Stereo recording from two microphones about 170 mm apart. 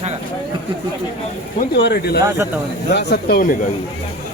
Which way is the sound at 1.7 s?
80° left.